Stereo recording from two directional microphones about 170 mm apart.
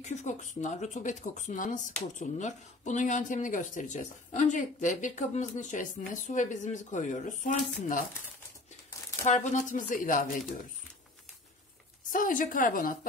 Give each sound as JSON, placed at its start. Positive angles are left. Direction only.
{"t": 0.0, "sound": "speech", "side_deg": 45}
{"t": 9.2, "sound": "speech", "side_deg": 45}
{"t": 12.1, "sound": "speech", "side_deg": 50}